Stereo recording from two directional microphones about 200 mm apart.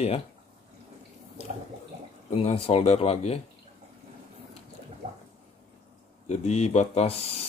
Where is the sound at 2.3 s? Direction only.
30° left (ahead or behind).